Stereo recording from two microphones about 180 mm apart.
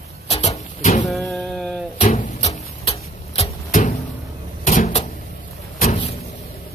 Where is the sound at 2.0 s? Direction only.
45° left (ahead or behind).